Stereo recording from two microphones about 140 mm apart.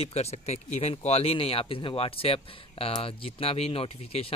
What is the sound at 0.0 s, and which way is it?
Speech, 50° left (ahead or behind).